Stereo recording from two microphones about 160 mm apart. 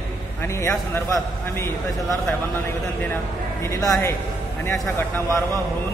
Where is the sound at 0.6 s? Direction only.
20° left (ahead or behind).